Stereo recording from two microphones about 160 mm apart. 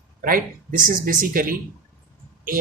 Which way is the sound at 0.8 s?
60° right (ahead or behind).